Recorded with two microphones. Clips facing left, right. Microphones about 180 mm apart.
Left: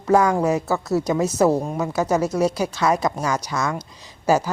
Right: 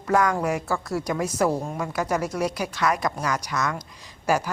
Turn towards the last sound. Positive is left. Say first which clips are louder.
# left 5 dB
turn(degrees=25)  # may be behind; listen again after turning